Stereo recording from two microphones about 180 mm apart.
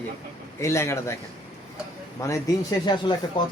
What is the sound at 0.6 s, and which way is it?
Speech, 15° left (ahead or behind).